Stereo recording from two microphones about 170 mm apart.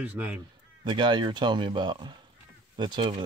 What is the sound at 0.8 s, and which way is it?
Speech, 25° right (ahead or behind).